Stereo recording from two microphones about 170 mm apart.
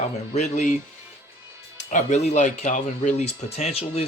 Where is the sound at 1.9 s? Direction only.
45° left (ahead or behind).